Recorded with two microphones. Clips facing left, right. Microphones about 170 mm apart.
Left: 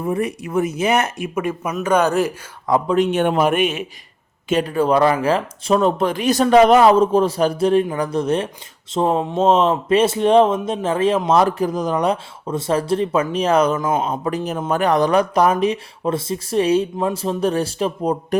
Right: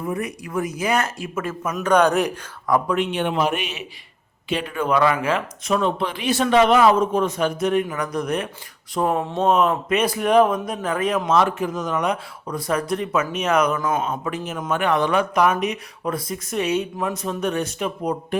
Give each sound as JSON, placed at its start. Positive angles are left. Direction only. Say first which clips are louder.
{"t": 0.0, "sound": "speech", "louder": "left 5 dB", "side_deg": 30}
{"t": 2.6, "sound": "speech", "louder": "left 2 dB", "side_deg": 25}
{"t": 2.9, "sound": "speech", "louder": "left 5 dB", "side_deg": 40}